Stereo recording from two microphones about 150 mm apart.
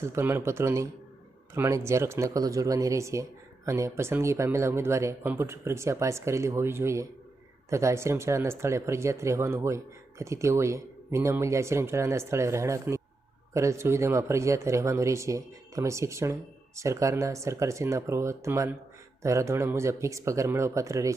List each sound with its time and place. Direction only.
0.0 s speech: 15° right (ahead or behind)